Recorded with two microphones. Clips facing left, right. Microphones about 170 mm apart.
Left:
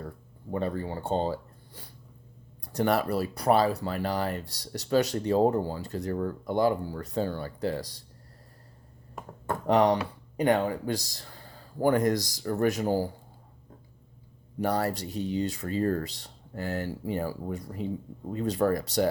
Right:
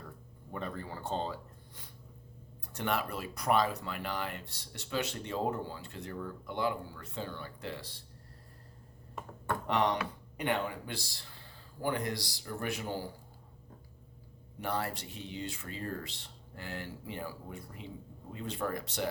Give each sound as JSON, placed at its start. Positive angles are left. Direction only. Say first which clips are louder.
{"t": 0.5, "sound": "speech", "louder": "left 9 dB", "side_deg": 30}
{"t": 9.5, "sound": "speech", "louder": "left 8 dB", "side_deg": 35}
{"t": 14.6, "sound": "speech", "louder": "left 8 dB", "side_deg": 40}